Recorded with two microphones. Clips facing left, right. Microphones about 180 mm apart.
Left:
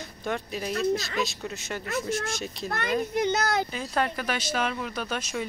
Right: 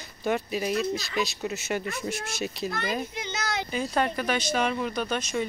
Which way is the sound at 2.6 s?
60° left (ahead or behind).